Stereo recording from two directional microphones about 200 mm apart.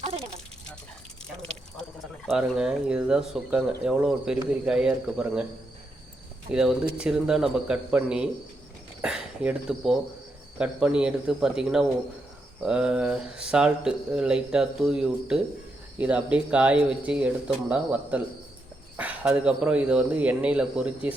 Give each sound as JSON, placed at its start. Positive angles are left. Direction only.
{"t": 2.2, "sound": "speech", "side_deg": -5}
{"t": 6.5, "sound": "speech", "side_deg": -5}